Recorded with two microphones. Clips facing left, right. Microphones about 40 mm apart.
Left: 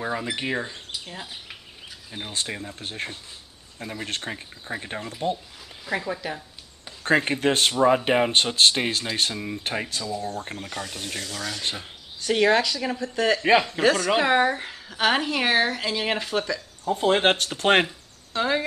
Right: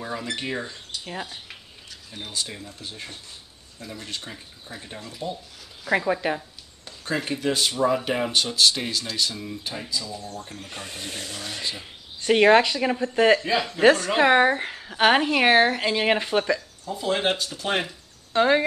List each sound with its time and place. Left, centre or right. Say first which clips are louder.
0.1 s speech: left 2 dB; centre
2.3 s speech: left 2 dB; left
5.9 s speech: right 5 dB; right
7.0 s speech: left 6 dB; left
10.8 s speech: even; right
12.2 s speech: right 4 dB; right
16.8 s speech: left 6 dB; left
18.3 s speech: right 5 dB; centre